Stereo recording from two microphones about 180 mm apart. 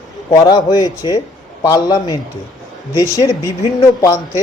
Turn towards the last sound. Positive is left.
turn(degrees=15)  # may be behind; listen again after turning